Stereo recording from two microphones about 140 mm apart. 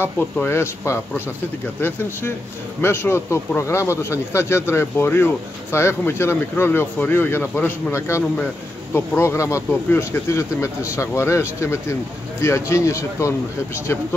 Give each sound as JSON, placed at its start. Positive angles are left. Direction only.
{"t": 0.0, "sound": "speech", "side_deg": 15}